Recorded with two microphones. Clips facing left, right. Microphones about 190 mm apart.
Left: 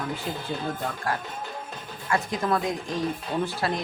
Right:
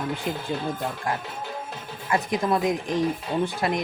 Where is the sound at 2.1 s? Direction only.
20° right (ahead or behind).